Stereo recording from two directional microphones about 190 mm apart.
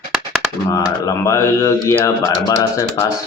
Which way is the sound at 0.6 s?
20° left (ahead or behind).